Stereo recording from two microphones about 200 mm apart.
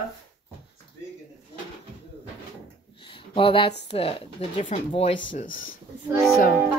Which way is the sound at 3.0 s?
25° left (ahead or behind).